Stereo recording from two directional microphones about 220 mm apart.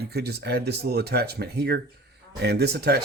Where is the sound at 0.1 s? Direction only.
45° right (ahead or behind).